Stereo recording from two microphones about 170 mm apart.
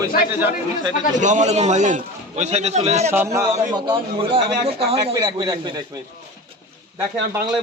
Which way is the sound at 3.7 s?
25° right (ahead or behind).